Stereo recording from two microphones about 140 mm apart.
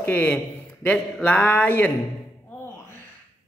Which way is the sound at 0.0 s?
10° left (ahead or behind).